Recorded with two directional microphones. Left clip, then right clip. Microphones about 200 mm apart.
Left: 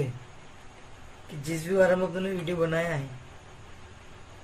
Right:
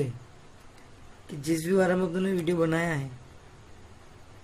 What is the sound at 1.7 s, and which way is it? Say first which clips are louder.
Speech: left 4 dB; 60° right (ahead or behind).